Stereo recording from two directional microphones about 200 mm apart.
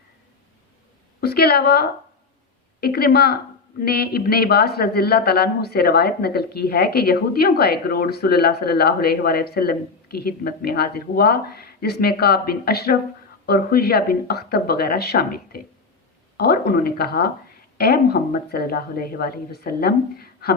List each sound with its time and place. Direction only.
1.2 s a man's voice: 50° left (ahead or behind)